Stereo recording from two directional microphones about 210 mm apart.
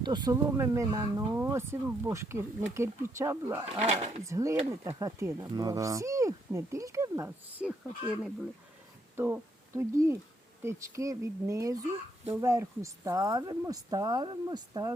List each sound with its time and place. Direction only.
0.0 s speech: 20° right (ahead or behind)
3.7 s speech: 30° right (ahead or behind)
4.3 s speech: 15° right (ahead or behind)